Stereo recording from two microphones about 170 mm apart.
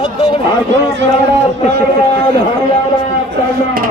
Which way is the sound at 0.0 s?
30° left (ahead or behind).